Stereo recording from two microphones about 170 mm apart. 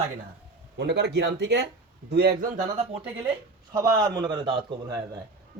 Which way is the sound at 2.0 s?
65° right (ahead or behind).